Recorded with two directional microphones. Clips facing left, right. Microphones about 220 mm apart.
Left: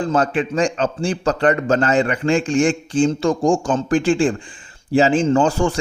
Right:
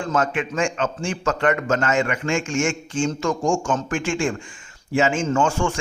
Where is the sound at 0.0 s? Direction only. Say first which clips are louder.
Left 4 dB; 35° left (ahead or behind).